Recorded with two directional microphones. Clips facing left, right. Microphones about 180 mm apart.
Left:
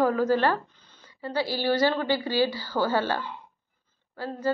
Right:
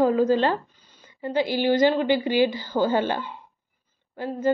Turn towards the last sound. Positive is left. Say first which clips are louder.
# right 4 dB
turn(degrees=-20)  # may be behind; listen again after turning